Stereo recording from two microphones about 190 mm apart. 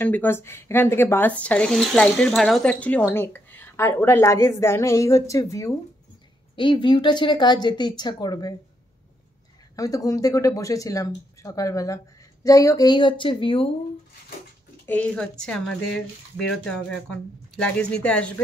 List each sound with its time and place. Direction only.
0.0 s speech: 10° left (ahead or behind)
9.8 s speech: 20° left (ahead or behind)
14.9 s speech: 5° left (ahead or behind)